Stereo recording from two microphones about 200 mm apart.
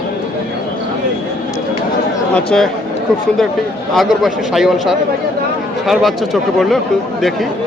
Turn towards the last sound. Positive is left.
turn(degrees=0)  # may be behind; listen again after turning